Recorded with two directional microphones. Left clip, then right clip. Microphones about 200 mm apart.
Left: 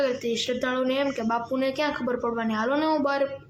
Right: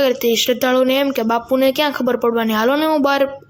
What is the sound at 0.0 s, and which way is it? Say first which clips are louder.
Speech: right 10 dB; 40° right (ahead or behind).